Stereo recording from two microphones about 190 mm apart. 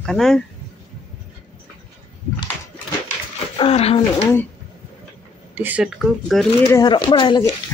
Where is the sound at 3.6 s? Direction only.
30° left (ahead or behind).